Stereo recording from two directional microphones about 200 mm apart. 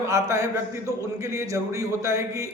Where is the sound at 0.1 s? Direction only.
15° right (ahead or behind).